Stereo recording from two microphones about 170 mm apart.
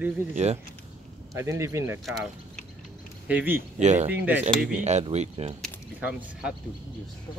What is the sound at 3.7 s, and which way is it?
Speech, 40° right (ahead or behind).